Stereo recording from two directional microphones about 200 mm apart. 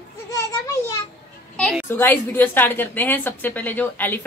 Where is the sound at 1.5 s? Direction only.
5° left (ahead or behind).